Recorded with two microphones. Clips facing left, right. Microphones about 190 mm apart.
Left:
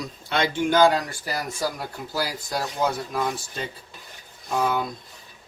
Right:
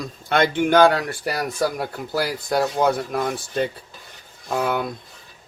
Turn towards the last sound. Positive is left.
turn(degrees=-60)  # may be behind; listen again after turning